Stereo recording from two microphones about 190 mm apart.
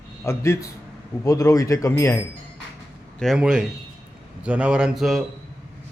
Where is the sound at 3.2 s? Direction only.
Centre (ahead or behind).